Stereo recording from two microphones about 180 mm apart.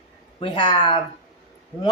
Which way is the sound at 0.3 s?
25° left (ahead or behind).